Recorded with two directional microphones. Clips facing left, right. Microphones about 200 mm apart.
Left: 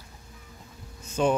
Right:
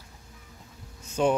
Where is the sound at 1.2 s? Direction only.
15° right (ahead or behind).